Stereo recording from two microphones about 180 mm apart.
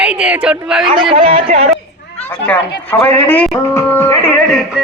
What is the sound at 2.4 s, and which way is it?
Speech, 10° left (ahead or behind).